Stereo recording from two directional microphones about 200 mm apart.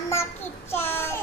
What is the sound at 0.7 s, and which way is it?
Child singing, 10° left (ahead or behind).